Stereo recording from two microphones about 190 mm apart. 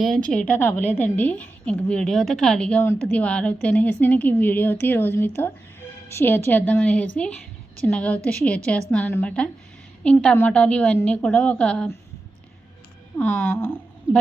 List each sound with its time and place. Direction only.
0.0 s a woman's voice: 5° left (ahead or behind)
13.1 s speech: 10° left (ahead or behind)